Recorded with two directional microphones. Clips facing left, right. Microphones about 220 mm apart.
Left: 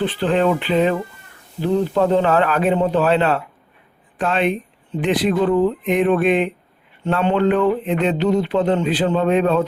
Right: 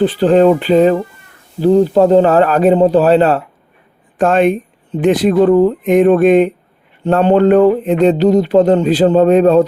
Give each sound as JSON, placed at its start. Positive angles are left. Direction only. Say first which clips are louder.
{"t": 0.0, "sound": "mantra", "louder": "right 8 dB", "side_deg": -40}
{"t": 4.2, "sound": "speech", "louder": "right 8 dB", "side_deg": -45}
{"t": 7.0, "sound": "mantra", "louder": "right 7 dB", "side_deg": -40}